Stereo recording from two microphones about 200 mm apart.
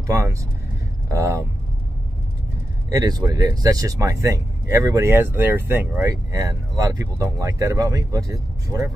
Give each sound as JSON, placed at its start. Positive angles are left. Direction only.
{"t": 0.0, "sound": "speech", "side_deg": -15}
{"t": 2.9, "sound": "speech", "side_deg": -20}